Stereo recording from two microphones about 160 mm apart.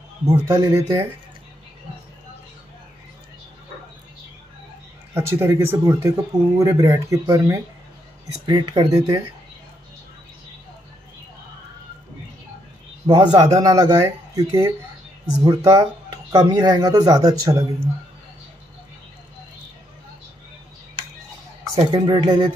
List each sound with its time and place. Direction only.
0.3 s a man's voice: 20° right (ahead or behind)
5.1 s a man's voice: 15° right (ahead or behind)
13.0 s a man's voice: 25° right (ahead or behind)
21.9 s a man's voice: 30° right (ahead or behind)